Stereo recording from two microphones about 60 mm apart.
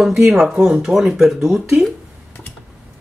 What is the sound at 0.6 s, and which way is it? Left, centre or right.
Speech, centre.